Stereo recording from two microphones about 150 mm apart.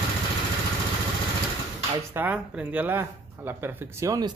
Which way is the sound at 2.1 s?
10° right (ahead or behind).